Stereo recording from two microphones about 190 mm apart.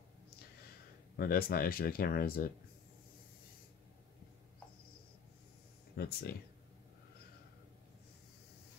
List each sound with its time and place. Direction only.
1.1 s speech: 55° left (ahead or behind)
5.9 s speech: 55° left (ahead or behind)